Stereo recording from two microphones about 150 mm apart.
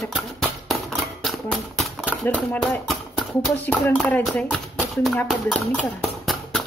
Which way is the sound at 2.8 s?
Centre (ahead or behind).